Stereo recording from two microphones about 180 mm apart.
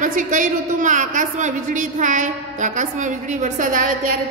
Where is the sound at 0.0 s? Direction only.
45° right (ahead or behind).